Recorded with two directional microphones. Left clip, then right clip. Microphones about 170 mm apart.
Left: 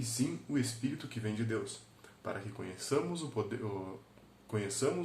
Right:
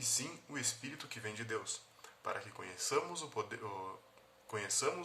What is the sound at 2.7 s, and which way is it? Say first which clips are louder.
Speech: left 2 dB; 15° right (ahead or behind).